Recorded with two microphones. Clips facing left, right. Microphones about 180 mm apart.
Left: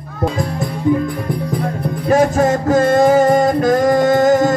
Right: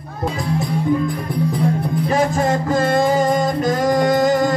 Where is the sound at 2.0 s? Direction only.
45° left (ahead or behind).